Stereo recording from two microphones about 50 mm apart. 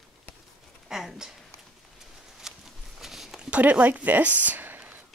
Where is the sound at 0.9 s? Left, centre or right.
Centre.